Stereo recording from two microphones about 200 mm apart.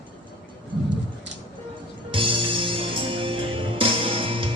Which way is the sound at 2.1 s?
25° right (ahead or behind).